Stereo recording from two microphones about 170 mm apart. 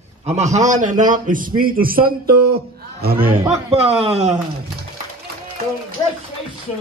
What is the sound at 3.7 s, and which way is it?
Speech, 35° right (ahead or behind).